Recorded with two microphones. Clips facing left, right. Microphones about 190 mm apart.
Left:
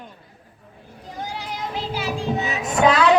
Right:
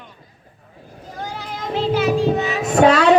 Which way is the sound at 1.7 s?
60° right (ahead or behind).